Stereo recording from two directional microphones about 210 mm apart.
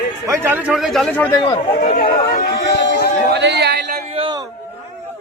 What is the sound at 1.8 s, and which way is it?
Speech, 45° left (ahead or behind).